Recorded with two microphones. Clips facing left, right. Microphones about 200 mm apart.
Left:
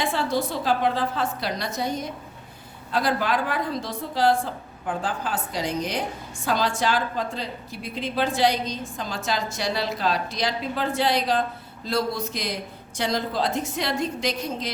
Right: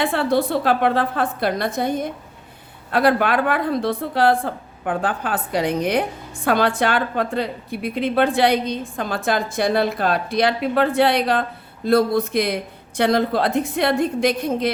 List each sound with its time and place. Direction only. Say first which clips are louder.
0.0 s a woman's voice: right 6 dB; 60° right (ahead or behind)